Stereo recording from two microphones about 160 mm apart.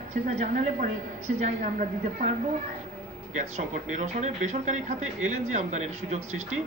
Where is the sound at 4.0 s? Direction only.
45° right (ahead or behind).